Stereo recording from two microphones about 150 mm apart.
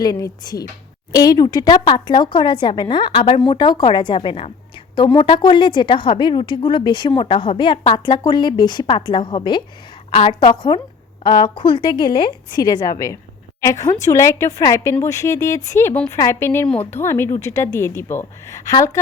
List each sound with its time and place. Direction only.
0.0 s a woman's voice: 25° left (ahead or behind)